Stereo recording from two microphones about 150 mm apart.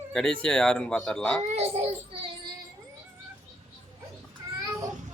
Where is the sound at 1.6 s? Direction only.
40° right (ahead or behind).